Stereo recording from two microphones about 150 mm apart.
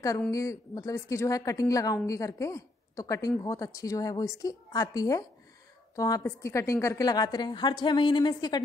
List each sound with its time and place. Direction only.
0.3 s a woman's voice: 20° left (ahead or behind)